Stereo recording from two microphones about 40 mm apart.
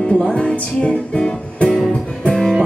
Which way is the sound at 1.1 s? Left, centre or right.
Left.